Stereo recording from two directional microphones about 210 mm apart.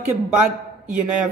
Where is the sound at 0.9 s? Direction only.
5° right (ahead or behind).